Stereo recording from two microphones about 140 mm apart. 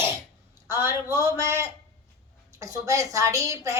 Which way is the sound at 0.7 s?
15° right (ahead or behind).